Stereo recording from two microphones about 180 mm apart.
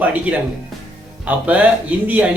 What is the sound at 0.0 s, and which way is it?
Speech, 10° right (ahead or behind).